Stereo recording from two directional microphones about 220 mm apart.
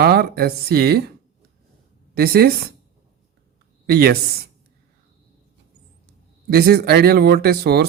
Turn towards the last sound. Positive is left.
turn(degrees=-45)  # may be behind; listen again after turning